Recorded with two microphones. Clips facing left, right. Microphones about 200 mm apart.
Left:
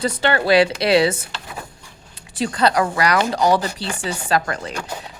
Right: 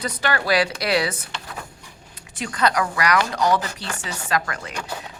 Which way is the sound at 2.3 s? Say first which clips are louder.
Left 4 dB; 30° left (ahead or behind).